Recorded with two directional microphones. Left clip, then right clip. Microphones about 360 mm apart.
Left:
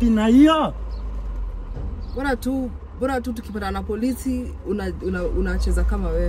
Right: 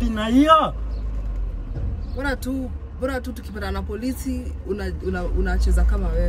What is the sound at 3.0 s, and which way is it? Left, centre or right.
Speech, centre.